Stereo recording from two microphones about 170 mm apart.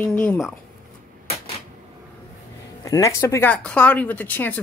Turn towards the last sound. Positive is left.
turn(degrees=10)  # may be behind; listen again after turning